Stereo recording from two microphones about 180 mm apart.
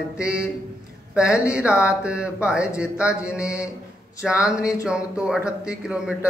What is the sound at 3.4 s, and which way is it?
Mantra, 15° left (ahead or behind).